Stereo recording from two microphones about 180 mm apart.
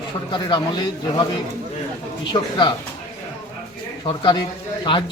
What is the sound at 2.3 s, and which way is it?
Speech, 25° left (ahead or behind).